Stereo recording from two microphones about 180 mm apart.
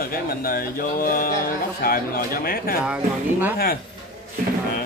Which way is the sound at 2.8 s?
10° right (ahead or behind).